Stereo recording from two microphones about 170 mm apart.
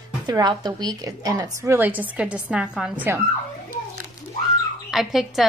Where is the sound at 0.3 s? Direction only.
25° right (ahead or behind); by 2.7 s 10° right (ahead or behind).